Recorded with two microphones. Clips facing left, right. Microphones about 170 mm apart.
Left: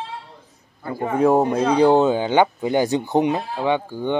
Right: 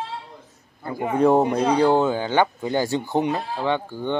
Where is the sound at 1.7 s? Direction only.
15° left (ahead or behind).